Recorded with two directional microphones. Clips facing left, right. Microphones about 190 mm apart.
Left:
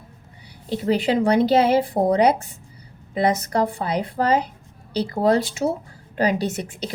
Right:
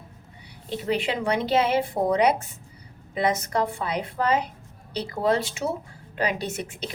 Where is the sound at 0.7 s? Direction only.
35° left (ahead or behind).